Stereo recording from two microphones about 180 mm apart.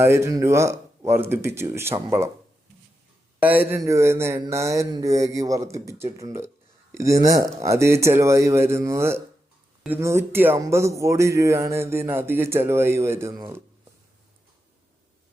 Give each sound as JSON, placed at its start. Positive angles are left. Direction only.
{"t": 0.0, "sound": "speech", "side_deg": -15}
{"t": 3.4, "sound": "speech", "side_deg": -10}